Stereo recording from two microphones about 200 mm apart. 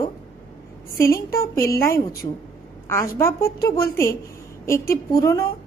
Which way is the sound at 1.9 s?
45° left (ahead or behind).